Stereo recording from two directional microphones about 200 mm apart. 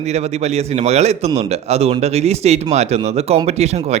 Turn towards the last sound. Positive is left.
turn(degrees=-35)  # may be behind; listen again after turning